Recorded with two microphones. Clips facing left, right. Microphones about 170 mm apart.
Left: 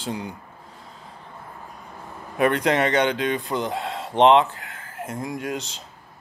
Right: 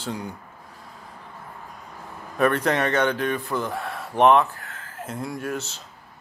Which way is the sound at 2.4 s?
15° left (ahead or behind).